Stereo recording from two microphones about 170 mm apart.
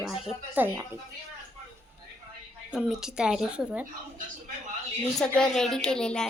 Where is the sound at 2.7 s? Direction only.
5° right (ahead or behind).